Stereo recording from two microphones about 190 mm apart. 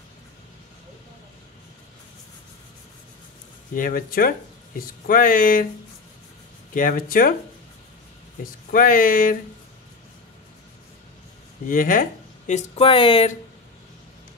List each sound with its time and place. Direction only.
3.7 s speech: 45° left (ahead or behind)
6.7 s speech: 45° left (ahead or behind)
8.7 s speech: 45° left (ahead or behind)
11.6 s speech: 45° left (ahead or behind)